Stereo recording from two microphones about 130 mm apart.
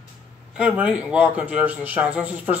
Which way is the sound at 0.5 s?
10° right (ahead or behind).